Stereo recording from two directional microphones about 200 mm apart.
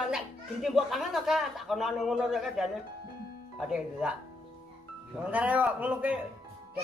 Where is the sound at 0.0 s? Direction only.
Centre (ahead or behind).